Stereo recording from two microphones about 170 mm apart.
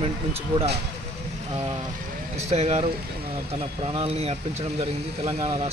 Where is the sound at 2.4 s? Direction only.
40° right (ahead or behind).